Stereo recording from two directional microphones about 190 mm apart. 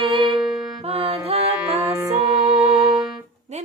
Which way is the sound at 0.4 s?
Centre (ahead or behind).